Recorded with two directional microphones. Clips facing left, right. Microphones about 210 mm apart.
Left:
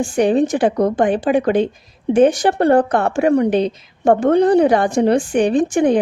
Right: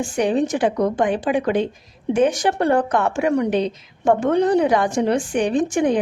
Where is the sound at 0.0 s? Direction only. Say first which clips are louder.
Left 4 dB; 35° left (ahead or behind).